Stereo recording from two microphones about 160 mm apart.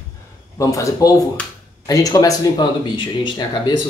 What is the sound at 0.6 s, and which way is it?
Speech, 20° left (ahead or behind).